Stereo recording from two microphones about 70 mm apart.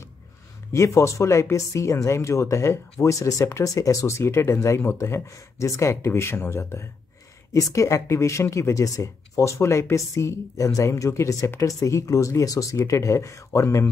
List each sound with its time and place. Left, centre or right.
0.7 s speech: left
7.5 s speech: left